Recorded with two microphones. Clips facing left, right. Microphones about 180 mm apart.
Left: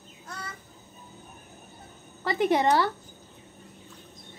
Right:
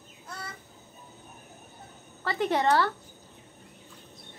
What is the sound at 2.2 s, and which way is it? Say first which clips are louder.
Speech: left 3 dB; 15° left (ahead or behind).